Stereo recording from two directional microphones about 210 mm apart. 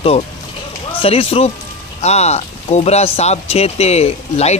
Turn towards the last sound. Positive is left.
turn(degrees=30)  # may be behind; listen again after turning